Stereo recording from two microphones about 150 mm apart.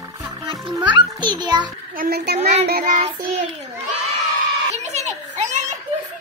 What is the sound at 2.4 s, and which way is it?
Child singing, 45° right (ahead or behind).